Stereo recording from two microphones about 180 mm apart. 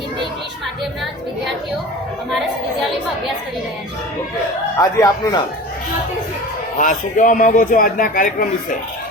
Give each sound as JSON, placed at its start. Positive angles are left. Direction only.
{"t": 4.8, "sound": "speech", "side_deg": 20}
{"t": 6.7, "sound": "a man's voice", "side_deg": 45}